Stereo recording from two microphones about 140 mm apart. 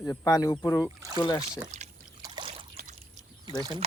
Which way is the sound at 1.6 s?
55° right (ahead or behind).